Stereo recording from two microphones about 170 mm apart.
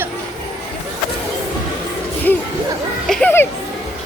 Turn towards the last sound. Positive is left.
turn(degrees=10)  # may be behind; listen again after turning